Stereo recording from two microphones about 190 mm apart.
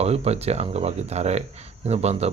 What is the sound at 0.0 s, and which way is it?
Speech, 35° right (ahead or behind).